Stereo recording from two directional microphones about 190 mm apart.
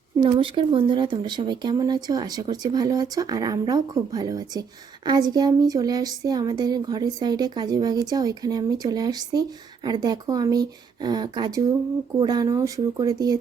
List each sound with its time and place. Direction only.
0.2 s speech: 25° right (ahead or behind)